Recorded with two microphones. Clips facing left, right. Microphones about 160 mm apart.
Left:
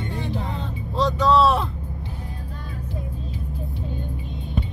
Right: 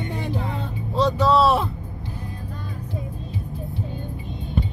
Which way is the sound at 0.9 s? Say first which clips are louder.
Even; centre (ahead or behind).